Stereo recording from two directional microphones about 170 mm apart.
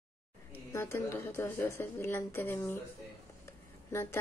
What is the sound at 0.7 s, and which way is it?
Speech, 15° left (ahead or behind).